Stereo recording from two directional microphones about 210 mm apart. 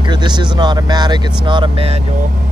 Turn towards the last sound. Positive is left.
turn(degrees=-25)  # may be behind; listen again after turning